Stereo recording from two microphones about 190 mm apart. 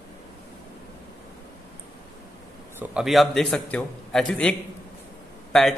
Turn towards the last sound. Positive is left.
turn(degrees=0)  # may be behind; listen again after turning